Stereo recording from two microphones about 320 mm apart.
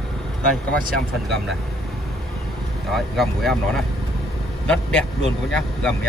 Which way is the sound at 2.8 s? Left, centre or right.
Centre.